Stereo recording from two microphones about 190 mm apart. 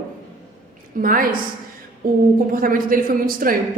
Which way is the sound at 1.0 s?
50° right (ahead or behind).